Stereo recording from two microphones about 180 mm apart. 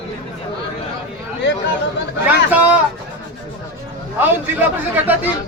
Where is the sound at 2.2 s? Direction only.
10° right (ahead or behind).